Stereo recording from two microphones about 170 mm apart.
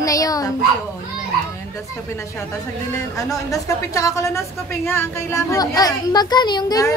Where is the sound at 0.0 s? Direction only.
20° left (ahead or behind).